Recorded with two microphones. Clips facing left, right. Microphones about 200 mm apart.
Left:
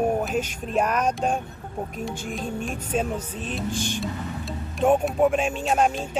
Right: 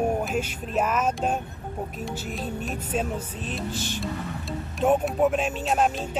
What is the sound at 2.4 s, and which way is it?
Speech, 45° left (ahead or behind).